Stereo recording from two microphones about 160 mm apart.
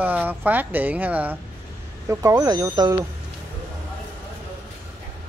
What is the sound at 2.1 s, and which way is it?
Speech, 20° right (ahead or behind).